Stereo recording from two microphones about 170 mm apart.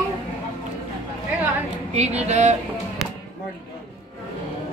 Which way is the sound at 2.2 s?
40° right (ahead or behind).